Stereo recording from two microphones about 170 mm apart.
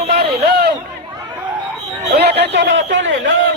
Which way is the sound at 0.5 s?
65° right (ahead or behind).